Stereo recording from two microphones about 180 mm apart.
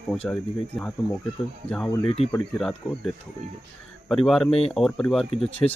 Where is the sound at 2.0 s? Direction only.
35° left (ahead or behind).